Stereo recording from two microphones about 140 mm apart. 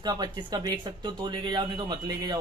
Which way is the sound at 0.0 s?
30° right (ahead or behind).